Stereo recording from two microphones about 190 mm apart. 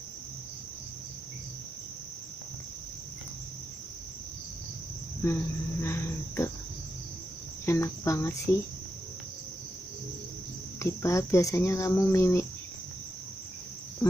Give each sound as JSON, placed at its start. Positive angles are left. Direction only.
{"t": 5.2, "sound": "cricket", "side_deg": 15}
{"t": 7.6, "sound": "speech", "side_deg": 15}
{"t": 10.8, "sound": "speech", "side_deg": 15}